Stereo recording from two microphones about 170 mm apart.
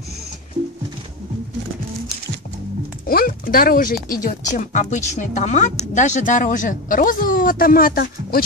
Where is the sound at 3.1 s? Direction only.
60° left (ahead or behind).